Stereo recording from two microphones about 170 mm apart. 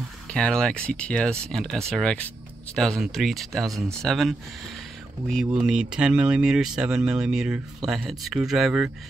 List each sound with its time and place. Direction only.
0.3 s speech: 5° left (ahead or behind)